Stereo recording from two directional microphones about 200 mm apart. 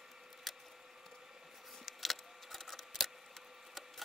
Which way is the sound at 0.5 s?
Centre (ahead or behind).